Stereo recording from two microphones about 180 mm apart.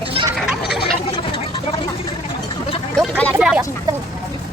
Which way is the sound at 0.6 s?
65° left (ahead or behind).